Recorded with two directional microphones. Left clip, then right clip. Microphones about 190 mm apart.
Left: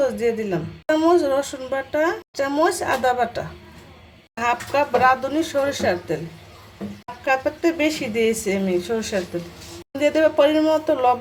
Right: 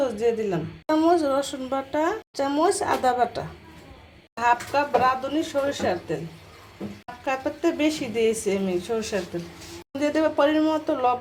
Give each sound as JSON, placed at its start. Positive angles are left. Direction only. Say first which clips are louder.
{"t": 0.0, "sound": "a woman's voice", "louder": "left 2 dB", "side_deg": -5}
{"t": 7.3, "sound": "a woman's voice", "louder": "left 5 dB", "side_deg": 0}